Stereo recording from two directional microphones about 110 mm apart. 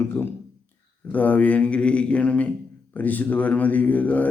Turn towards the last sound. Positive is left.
turn(degrees=15)  # may be behind; listen again after turning